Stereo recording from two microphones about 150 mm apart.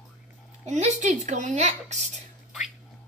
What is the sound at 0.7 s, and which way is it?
Speech, 50° right (ahead or behind).